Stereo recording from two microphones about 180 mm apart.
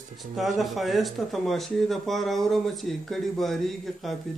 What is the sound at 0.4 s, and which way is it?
Speech, centre (ahead or behind).